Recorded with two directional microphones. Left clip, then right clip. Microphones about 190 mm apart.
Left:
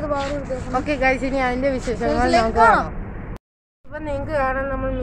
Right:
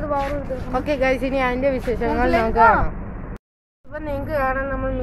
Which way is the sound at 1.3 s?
10° right (ahead or behind).